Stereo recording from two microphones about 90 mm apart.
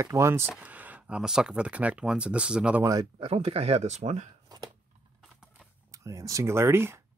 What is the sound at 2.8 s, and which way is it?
Speech, 45° right (ahead or behind).